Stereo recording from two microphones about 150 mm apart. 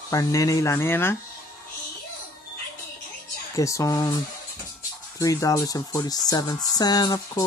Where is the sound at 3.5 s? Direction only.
20° left (ahead or behind).